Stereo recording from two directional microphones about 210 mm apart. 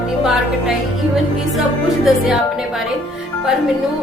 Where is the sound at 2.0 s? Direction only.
Centre (ahead or behind).